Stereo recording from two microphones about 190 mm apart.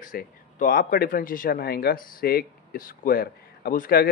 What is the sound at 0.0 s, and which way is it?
Speech, 45° left (ahead or behind).